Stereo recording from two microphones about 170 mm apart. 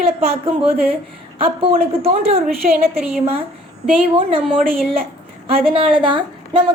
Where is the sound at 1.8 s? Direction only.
35° right (ahead or behind).